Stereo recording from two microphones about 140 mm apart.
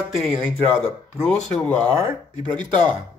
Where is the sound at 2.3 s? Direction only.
30° right (ahead or behind).